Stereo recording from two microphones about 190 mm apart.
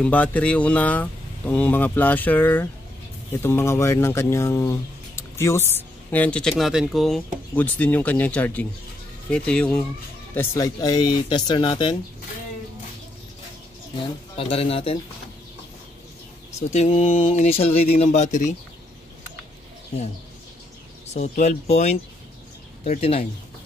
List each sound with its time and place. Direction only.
0.0 s speech: 10° left (ahead or behind); by 12.0 s 25° left (ahead or behind)
14.3 s speech: 30° left (ahead or behind)
16.7 s speech: 35° left (ahead or behind)
21.1 s speech: 35° left (ahead or behind)